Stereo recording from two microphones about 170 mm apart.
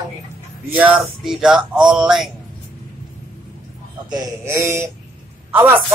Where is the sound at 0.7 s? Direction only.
10° right (ahead or behind).